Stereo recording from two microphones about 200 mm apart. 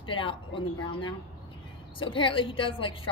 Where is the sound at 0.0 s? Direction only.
25° left (ahead or behind).